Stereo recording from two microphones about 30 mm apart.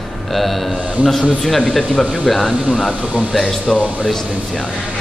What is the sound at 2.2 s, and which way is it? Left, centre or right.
Speech, centre.